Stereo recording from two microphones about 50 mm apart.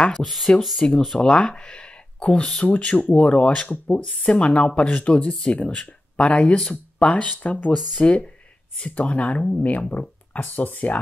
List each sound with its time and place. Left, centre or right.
0.2 s speech: centre
0.7 s speech: centre
1.2 s speech: left
4.0 s speech: centre
4.3 s speech: left